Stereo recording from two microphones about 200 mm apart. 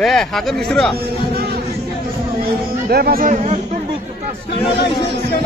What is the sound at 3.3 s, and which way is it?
Speech, 35° right (ahead or behind).